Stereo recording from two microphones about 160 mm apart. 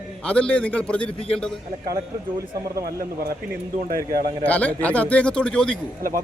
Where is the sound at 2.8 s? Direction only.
70° right (ahead or behind).